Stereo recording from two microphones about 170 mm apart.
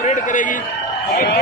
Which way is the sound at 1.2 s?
70° left (ahead or behind).